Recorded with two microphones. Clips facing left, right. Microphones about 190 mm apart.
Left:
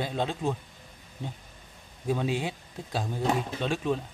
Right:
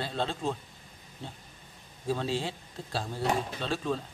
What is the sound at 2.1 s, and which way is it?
A man's voice, 15° left (ahead or behind).